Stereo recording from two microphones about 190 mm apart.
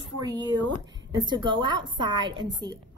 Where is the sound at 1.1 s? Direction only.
25° right (ahead or behind).